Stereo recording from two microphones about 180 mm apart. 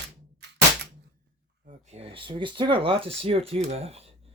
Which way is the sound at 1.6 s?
35° right (ahead or behind).